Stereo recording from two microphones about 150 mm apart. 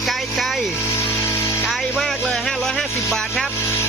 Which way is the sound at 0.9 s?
20° left (ahead or behind).